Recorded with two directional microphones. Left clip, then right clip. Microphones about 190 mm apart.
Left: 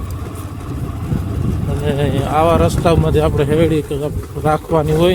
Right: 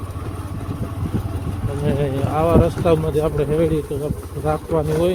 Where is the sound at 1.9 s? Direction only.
20° left (ahead or behind).